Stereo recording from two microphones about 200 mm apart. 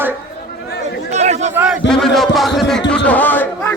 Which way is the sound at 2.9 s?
5° left (ahead or behind).